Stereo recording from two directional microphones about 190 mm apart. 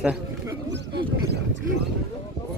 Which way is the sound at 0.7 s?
65° right (ahead or behind).